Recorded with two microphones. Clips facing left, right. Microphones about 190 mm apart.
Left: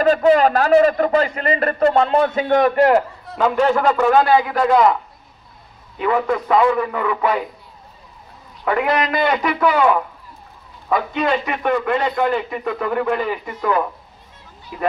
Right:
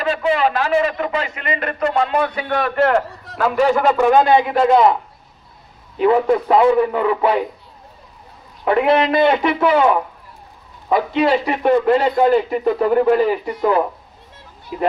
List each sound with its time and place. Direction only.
0.0 s a man's voice: 45° left (ahead or behind); by 3.0 s 15° left (ahead or behind)
3.3 s a man's voice: 5° right (ahead or behind); by 4.9 s 25° right (ahead or behind)
5.9 s a man's voice: 25° right (ahead or behind)
8.6 s a man's voice: 25° right (ahead or behind)